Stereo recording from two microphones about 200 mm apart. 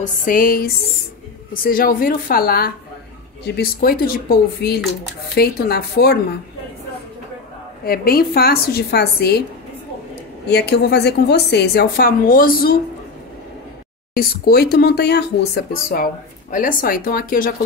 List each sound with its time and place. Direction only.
0.0 s speech: 45° left (ahead or behind)
7.8 s speech: 50° left (ahead or behind)
10.5 s speech: 55° left (ahead or behind)
14.1 s speech: 45° left (ahead or behind)